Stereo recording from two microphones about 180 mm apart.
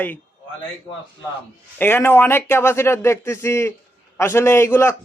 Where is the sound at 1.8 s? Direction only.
10° left (ahead or behind).